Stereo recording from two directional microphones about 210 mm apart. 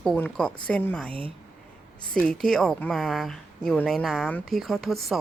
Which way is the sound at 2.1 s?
Centre (ahead or behind).